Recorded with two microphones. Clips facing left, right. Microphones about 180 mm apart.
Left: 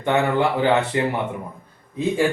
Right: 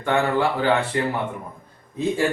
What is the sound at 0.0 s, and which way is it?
A man's voice, 20° left (ahead or behind).